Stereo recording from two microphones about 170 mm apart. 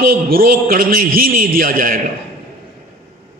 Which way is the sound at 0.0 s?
60° right (ahead or behind).